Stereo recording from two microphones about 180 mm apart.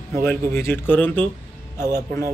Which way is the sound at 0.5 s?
10° left (ahead or behind).